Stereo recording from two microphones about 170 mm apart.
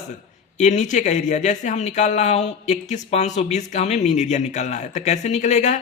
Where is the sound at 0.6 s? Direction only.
45° left (ahead or behind).